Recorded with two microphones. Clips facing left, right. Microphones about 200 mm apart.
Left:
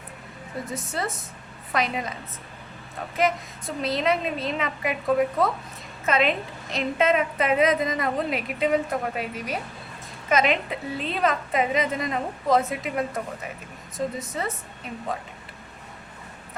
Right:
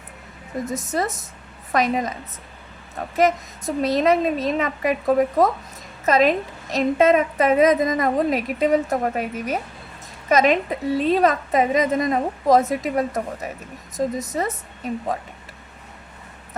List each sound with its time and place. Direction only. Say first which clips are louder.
0.7 s a woman's voice: right 6 dB; 40° right (ahead or behind)
3.2 s a woman's voice: right 5 dB; 40° right (ahead or behind)